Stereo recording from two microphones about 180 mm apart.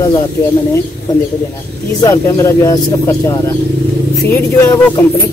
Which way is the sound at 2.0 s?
15° left (ahead or behind).